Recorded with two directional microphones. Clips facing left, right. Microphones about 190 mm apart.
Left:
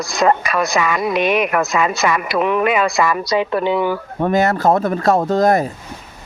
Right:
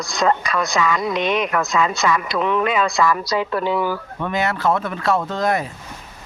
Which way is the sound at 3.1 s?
20° left (ahead or behind).